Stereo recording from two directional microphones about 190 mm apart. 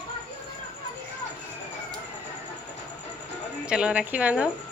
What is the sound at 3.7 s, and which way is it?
Speech, 5° right (ahead or behind).